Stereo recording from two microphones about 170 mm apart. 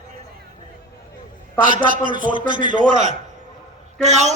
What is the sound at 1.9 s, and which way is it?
A man's voice, 50° right (ahead or behind).